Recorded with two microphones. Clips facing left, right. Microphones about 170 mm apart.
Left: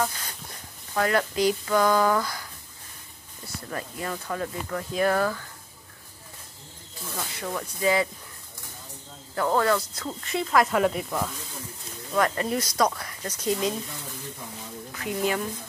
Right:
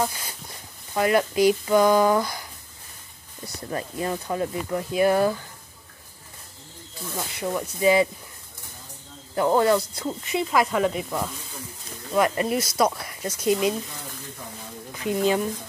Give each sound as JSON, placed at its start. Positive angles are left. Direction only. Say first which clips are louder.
{"t": 0.9, "sound": "speech", "louder": "right 3 dB", "side_deg": -15}
{"t": 3.6, "sound": "speech", "louder": "right 5 dB", "side_deg": -25}
{"t": 7.2, "sound": "speech", "louder": "right 4 dB", "side_deg": -15}
{"t": 9.3, "sound": "speech", "louder": "right 4 dB", "side_deg": -20}
{"t": 12.1, "sound": "speech", "louder": "right 3 dB", "side_deg": -15}
{"t": 14.9, "sound": "speech", "louder": "right 5 dB", "side_deg": -20}